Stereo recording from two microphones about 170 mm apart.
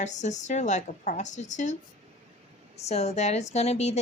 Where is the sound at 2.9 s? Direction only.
40° left (ahead or behind).